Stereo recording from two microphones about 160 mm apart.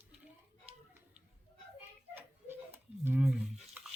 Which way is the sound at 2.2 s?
15° right (ahead or behind).